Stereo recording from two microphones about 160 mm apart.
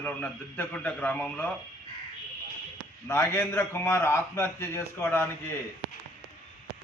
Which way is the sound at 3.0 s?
15° left (ahead or behind).